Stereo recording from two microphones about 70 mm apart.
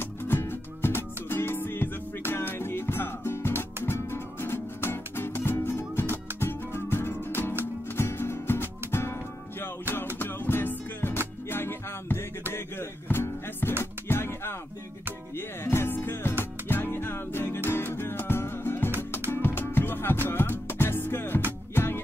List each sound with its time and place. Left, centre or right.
0.0 s music: left